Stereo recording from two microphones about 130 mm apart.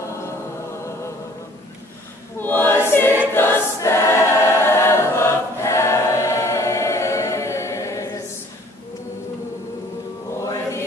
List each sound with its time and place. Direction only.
2.4 s choir: 15° left (ahead or behind)
10.4 s chant: 25° left (ahead or behind)